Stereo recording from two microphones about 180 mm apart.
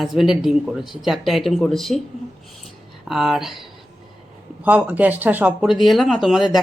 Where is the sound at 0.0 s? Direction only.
Centre (ahead or behind).